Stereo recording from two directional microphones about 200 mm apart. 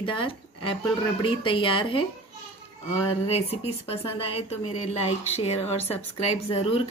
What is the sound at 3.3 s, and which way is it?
A woman's voice, 30° left (ahead or behind).